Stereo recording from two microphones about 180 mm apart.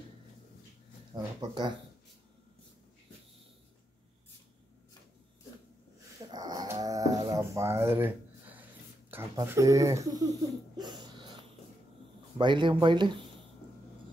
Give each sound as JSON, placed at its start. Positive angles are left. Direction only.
{"t": 1.1, "sound": "speech", "side_deg": -25}
{"t": 6.3, "sound": "dog", "side_deg": -20}
{"t": 9.3, "sound": "speech", "side_deg": -20}
{"t": 10.8, "sound": "a sound", "side_deg": -25}
{"t": 12.4, "sound": "speech", "side_deg": -25}